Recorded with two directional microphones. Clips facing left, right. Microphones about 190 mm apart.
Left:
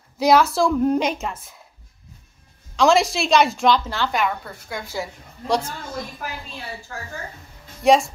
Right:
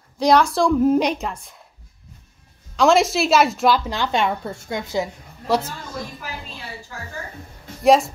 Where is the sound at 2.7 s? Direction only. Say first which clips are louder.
Right 1 dB; centre (ahead or behind).